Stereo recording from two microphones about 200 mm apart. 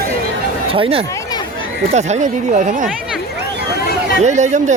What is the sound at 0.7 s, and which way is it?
Speech, 30° right (ahead or behind).